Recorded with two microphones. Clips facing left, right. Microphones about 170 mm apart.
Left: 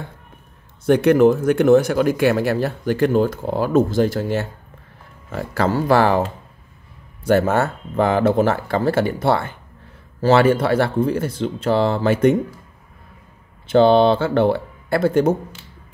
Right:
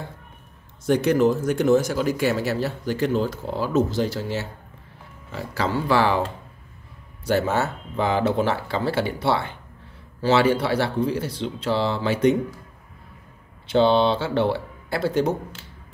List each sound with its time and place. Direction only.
0.8 s speech: 60° left (ahead or behind)
7.2 s speech: 50° left (ahead or behind)
13.7 s speech: 50° left (ahead or behind)